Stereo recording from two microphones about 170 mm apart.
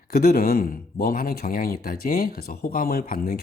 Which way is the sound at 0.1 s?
60° left (ahead or behind).